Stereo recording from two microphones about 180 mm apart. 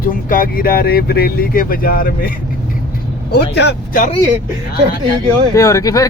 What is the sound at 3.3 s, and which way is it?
Speech, 65° left (ahead or behind).